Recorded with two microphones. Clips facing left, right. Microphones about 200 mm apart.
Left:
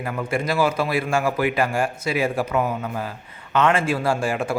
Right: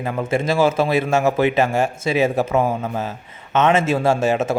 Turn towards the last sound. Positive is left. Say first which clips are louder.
# right 5 dB
turn(degrees=-25)  # may be behind; listen again after turning